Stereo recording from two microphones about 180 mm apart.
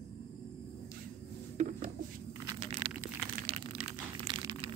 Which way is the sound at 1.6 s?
45° right (ahead or behind).